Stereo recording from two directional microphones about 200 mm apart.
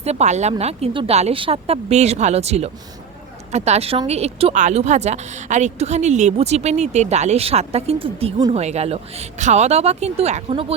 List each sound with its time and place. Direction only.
0.0 s speech: 35° right (ahead or behind)